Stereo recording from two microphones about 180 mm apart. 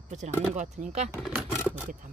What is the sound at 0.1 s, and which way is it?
Speech, 40° right (ahead or behind).